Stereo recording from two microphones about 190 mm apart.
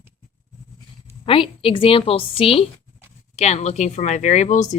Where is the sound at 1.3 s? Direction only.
30° left (ahead or behind).